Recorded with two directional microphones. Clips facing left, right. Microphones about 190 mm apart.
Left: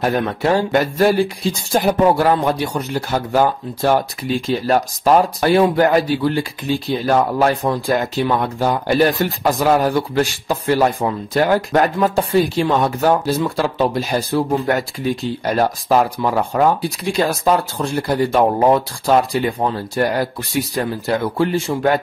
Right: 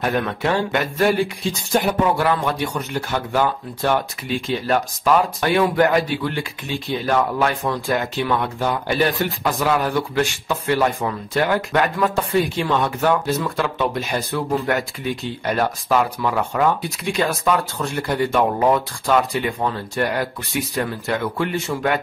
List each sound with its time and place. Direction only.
0.0 s speech: 35° left (ahead or behind)